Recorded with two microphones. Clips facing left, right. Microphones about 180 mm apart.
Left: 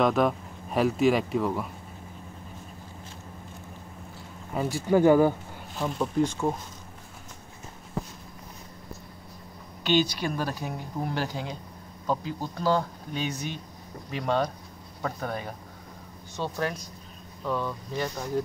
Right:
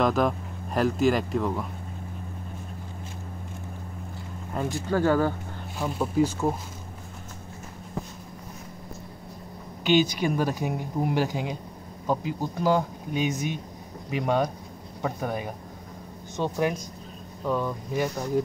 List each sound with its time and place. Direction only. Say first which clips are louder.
0.0 s speech: even; centre (ahead or behind)
4.6 s speech: left 3 dB; 10° left (ahead or behind)
5.8 s speech: right 1 dB; 5° right (ahead or behind)
9.8 s speech: right 3 dB; 15° right (ahead or behind)